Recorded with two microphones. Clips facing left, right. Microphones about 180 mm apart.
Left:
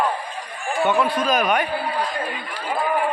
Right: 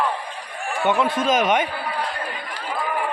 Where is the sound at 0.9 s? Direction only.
20° right (ahead or behind).